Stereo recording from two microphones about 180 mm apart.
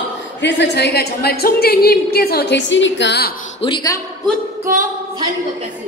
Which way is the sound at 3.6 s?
25° left (ahead or behind).